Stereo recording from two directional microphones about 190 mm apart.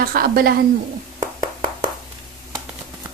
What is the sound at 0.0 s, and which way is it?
Speech, 50° right (ahead or behind).